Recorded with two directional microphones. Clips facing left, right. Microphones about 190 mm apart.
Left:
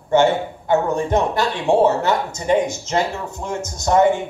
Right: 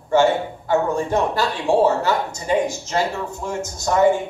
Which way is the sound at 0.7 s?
20° left (ahead or behind).